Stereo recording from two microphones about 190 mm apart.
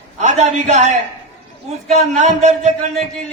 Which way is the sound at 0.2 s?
40° right (ahead or behind).